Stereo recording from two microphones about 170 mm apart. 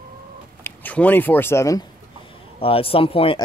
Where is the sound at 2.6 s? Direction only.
35° left (ahead or behind).